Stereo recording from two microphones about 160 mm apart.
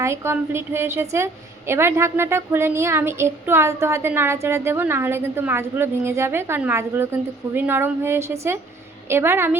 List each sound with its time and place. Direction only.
0.0 s a woman's voice: 15° right (ahead or behind)